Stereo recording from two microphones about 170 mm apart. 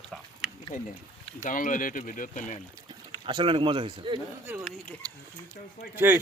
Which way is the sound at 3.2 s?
30° right (ahead or behind).